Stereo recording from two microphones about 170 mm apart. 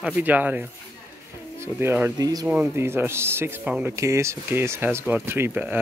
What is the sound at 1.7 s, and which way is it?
Speech, 15° right (ahead or behind).